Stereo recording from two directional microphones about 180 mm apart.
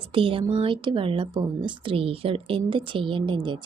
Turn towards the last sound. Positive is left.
turn(degrees=-25)  # may be behind; listen again after turning